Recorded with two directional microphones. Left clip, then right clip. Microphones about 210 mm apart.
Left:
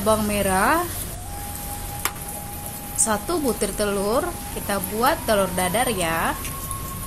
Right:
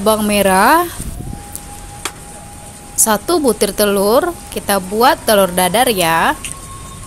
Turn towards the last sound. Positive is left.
turn(degrees=-45)  # may be behind; listen again after turning